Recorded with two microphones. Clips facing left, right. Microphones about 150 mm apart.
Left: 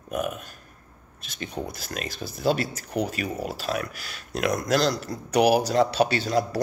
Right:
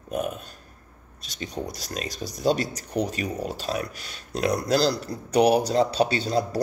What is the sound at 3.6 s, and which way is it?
Speech, 30° right (ahead or behind).